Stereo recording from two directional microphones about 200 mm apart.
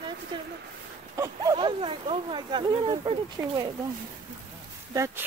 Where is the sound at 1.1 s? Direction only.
15° right (ahead or behind).